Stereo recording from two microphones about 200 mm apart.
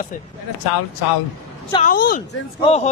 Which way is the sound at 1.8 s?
45° left (ahead or behind).